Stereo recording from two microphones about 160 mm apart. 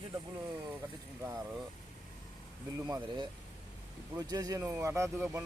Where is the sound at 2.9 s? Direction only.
25° right (ahead or behind).